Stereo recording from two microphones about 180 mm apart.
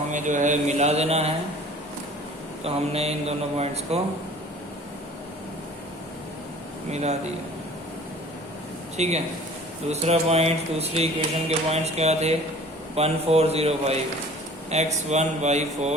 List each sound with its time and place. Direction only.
0.1 s speech: 45° right (ahead or behind)
2.6 s speech: 35° right (ahead or behind)
6.9 s speech: 40° right (ahead or behind)
9.0 s speech: 40° right (ahead or behind)